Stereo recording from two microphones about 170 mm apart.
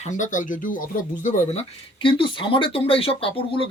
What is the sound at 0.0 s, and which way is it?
Speech, 50° left (ahead or behind).